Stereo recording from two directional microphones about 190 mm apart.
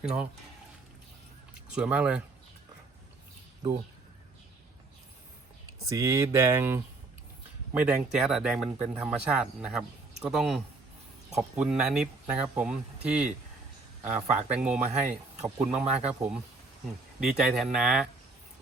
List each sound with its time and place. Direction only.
0.0 s speech: 5° right (ahead or behind)
1.7 s speech: 5° right (ahead or behind)
5.9 s speech: 15° right (ahead or behind)